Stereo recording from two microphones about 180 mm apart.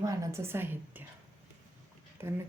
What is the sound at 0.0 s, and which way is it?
Speech, 15° right (ahead or behind).